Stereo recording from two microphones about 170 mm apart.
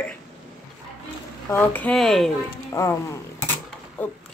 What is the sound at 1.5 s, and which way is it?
Speech, 10° left (ahead or behind).